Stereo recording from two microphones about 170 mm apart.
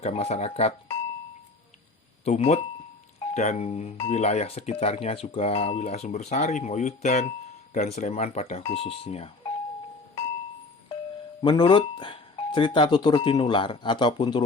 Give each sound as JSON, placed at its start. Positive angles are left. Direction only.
{"t": 0.0, "sound": "speech", "side_deg": 40}
{"t": 2.2, "sound": "speech", "side_deg": 40}
{"t": 11.4, "sound": "speech", "side_deg": 30}